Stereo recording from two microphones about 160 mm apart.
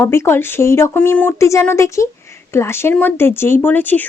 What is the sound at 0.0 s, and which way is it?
Speech, 15° left (ahead or behind).